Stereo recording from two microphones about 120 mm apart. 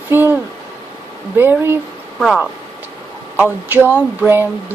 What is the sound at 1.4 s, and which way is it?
Speech, 15° right (ahead or behind).